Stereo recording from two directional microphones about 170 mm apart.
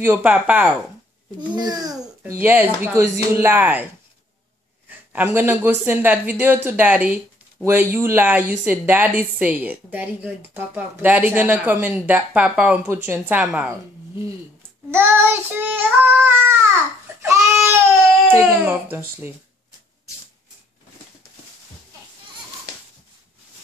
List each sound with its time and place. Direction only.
0.0 s speech: 10° right (ahead or behind)
1.4 s a child's voice: 25° right (ahead or behind)
4.8 s speech: 10° right (ahead or behind)
14.9 s speech: 10° right (ahead or behind)
17.2 s crying: 15° right (ahead or behind)
18.3 s speech: 10° right (ahead or behind)